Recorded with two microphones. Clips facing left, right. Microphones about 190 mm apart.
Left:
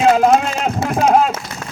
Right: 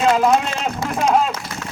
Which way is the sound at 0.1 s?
50° left (ahead or behind).